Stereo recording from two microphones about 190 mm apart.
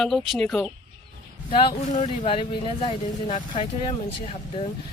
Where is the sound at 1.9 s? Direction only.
35° left (ahead or behind).